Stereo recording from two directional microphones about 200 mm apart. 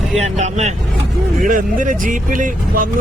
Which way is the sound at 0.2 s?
35° right (ahead or behind).